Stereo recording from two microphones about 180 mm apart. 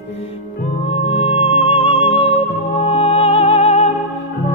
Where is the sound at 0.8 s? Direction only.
35° left (ahead or behind).